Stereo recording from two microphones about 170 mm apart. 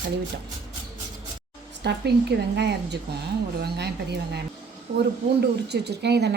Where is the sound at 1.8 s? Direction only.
80° right.